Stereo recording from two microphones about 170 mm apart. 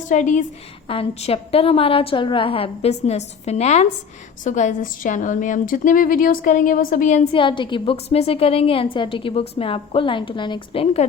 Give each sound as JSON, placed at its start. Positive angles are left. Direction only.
{"t": 0.1, "sound": "a woman's voice", "side_deg": 50}
{"t": 0.9, "sound": "a woman's voice", "side_deg": 35}
{"t": 7.3, "sound": "a woman's voice", "side_deg": 30}